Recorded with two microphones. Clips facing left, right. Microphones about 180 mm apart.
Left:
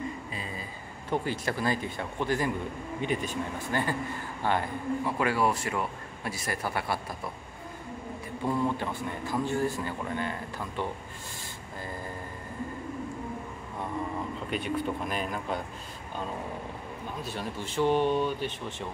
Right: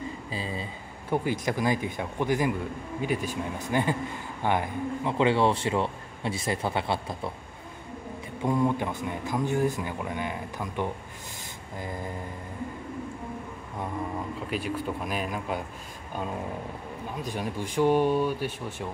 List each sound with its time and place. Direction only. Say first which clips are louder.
0.3 s speech: right 5 dB; 30° right (ahead or behind)
1.1 s a man's voice: right 3 dB; 15° right (ahead or behind)
8.5 s a man's voice: right 3 dB; 15° right (ahead or behind)
14.5 s a man's voice: left 1 dB; 5° right (ahead or behind)
17.2 s a man's voice: right 5 dB; 15° right (ahead or behind)